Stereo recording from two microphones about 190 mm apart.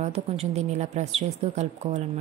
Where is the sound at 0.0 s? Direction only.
35° right (ahead or behind).